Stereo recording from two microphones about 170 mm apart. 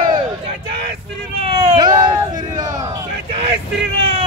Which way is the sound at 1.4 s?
30° right (ahead or behind).